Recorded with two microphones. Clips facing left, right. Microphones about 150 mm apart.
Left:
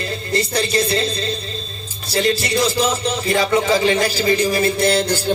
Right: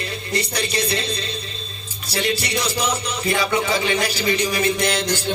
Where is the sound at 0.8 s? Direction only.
30° left (ahead or behind).